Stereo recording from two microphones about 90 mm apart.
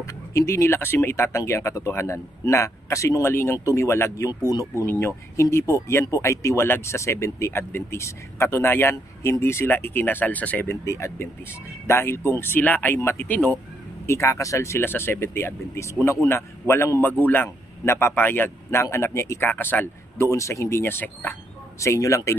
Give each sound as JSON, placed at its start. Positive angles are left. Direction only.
{"t": 0.0, "sound": "speech", "side_deg": 35}
{"t": 4.3, "sound": "speech", "side_deg": 45}
{"t": 4.8, "sound": "speech", "side_deg": 30}
{"t": 13.3, "sound": "speech", "side_deg": 15}
{"t": 14.0, "sound": "speech", "side_deg": 35}
{"t": 19.5, "sound": "speech", "side_deg": 20}
{"t": 20.2, "sound": "speech", "side_deg": 35}
{"t": 21.7, "sound": "speech", "side_deg": 35}